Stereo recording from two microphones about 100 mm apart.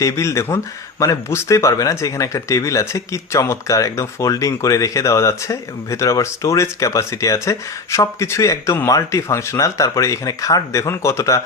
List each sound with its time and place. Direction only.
0.0 s speech: 30° left (ahead or behind)